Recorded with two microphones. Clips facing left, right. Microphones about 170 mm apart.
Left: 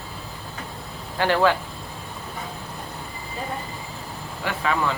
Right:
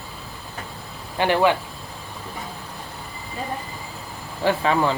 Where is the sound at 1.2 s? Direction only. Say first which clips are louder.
Right 1 dB; 15° right (ahead or behind).